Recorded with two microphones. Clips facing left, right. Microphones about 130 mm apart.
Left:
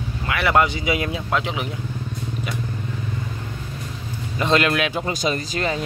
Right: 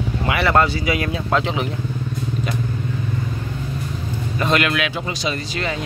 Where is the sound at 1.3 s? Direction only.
10° left (ahead or behind).